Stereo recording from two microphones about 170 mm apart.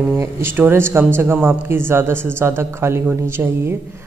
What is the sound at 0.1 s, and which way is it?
A man's voice, 15° right (ahead or behind).